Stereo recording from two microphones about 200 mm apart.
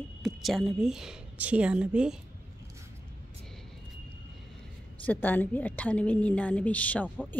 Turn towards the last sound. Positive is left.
turn(degrees=5)  # may be behind; listen again after turning